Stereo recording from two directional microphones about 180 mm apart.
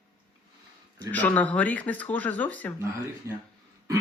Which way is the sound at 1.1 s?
10° left (ahead or behind).